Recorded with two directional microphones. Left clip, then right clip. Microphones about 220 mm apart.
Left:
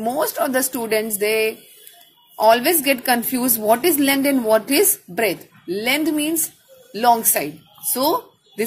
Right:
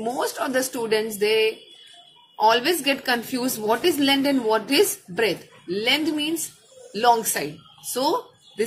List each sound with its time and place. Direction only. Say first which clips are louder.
0.0 s a woman's voice: left 5 dB; 35° left (ahead or behind)